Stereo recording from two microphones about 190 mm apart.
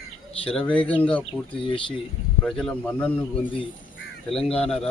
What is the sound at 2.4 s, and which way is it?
Speech, 5° left (ahead or behind).